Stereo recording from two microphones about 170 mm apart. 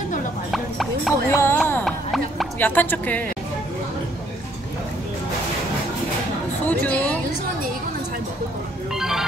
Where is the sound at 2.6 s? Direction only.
10° left (ahead or behind).